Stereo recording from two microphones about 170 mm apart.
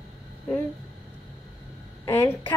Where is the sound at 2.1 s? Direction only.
15° left (ahead or behind).